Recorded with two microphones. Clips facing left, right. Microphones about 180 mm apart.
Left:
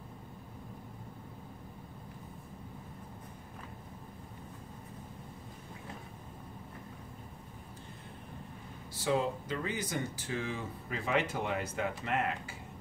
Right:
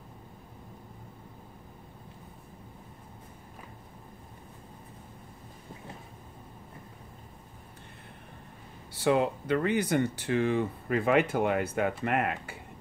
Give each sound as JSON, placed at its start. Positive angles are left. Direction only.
{"t": 8.9, "sound": "speech", "side_deg": -65}